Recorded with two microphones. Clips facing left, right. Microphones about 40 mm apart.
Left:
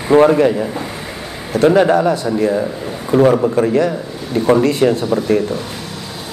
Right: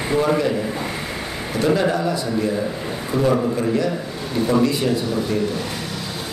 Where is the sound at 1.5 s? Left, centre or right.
Left.